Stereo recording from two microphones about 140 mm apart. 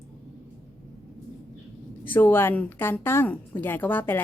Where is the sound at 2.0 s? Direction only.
15° left (ahead or behind).